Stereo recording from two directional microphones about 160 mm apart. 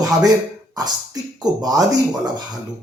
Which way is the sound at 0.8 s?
25° right (ahead or behind).